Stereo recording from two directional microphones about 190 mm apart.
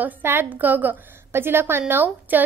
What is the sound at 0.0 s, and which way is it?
A woman's voice, 10° right (ahead or behind).